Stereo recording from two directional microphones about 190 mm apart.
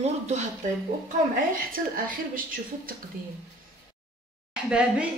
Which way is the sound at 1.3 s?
45° right (ahead or behind).